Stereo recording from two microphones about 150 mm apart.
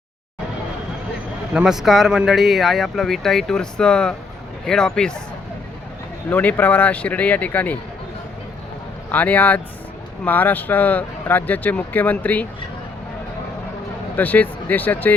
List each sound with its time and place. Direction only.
1.5 s speech: 5° right (ahead or behind)
6.3 s speech: 10° left (ahead or behind)
9.1 s speech: 10° left (ahead or behind)
14.2 s speech: 10° left (ahead or behind)